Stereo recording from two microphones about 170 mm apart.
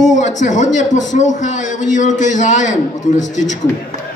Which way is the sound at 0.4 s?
45° left (ahead or behind).